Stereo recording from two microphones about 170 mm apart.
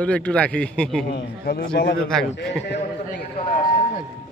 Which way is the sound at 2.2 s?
90° left.